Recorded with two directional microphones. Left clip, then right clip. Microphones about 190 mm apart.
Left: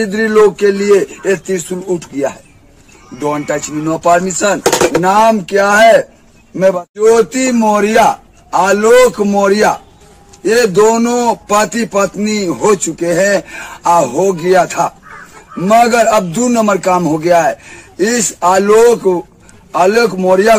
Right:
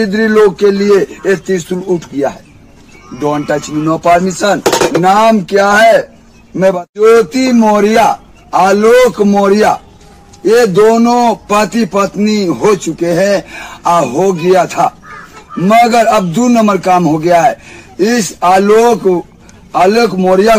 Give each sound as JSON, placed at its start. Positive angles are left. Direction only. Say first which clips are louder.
{"t": 0.0, "sound": "a man's voice", "louder": "right 1 dB", "side_deg": 0}